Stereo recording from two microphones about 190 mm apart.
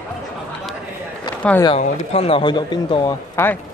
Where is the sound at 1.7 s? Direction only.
35° left (ahead or behind).